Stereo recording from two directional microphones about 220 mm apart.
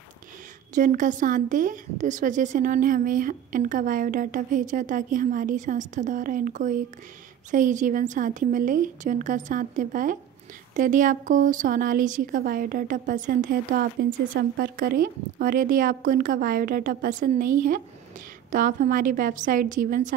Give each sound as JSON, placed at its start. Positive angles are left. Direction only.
{"t": 0.7, "sound": "a woman's voice", "side_deg": -35}